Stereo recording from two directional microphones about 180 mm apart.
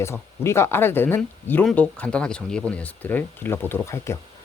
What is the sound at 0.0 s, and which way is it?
Speech, 15° left (ahead or behind).